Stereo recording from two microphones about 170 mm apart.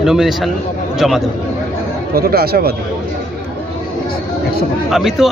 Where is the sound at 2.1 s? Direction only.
65° right (ahead or behind).